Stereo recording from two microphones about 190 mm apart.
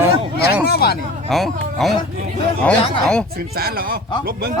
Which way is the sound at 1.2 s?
Centre (ahead or behind).